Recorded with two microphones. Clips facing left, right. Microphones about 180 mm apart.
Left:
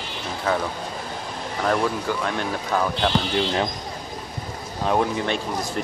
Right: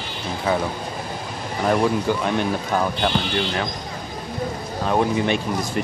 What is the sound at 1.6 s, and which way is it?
Speech, 15° right (ahead or behind).